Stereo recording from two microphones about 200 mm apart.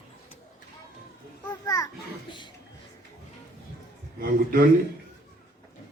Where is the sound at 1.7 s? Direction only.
20° left (ahead or behind).